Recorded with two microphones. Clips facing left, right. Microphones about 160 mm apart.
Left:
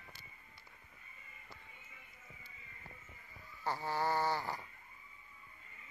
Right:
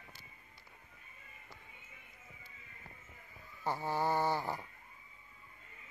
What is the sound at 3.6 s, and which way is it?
Snoring, 20° right (ahead or behind).